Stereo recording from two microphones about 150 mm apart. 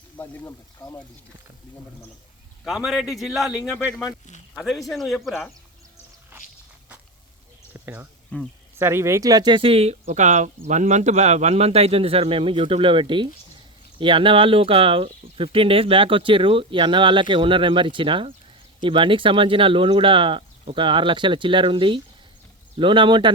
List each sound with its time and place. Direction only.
0.2 s speech: 15° left (ahead or behind)
2.6 s a man's voice: centre (ahead or behind)
6.3 s walk: 15° right (ahead or behind)
7.7 s a sound: 15° right (ahead or behind)
8.3 s speech: 10° left (ahead or behind)
8.8 s speech: 15° right (ahead or behind); by 23.3 s 30° right (ahead or behind)